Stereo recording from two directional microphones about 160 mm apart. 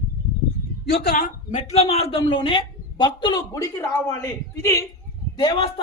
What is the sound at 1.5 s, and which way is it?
A man's voice, 45° left (ahead or behind).